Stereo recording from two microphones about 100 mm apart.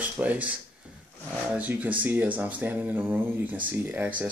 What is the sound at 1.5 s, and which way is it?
Speech, 15° right (ahead or behind).